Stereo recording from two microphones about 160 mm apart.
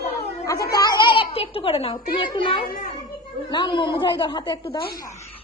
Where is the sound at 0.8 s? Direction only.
25° left (ahead or behind).